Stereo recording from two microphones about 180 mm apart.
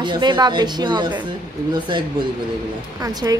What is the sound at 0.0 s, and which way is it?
A woman's voice, 25° right (ahead or behind).